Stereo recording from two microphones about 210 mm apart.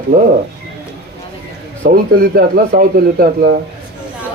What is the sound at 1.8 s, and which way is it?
Speech, 40° right (ahead or behind).